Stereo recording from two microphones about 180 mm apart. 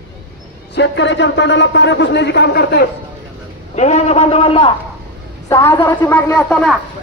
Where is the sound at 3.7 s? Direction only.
40° left (ahead or behind).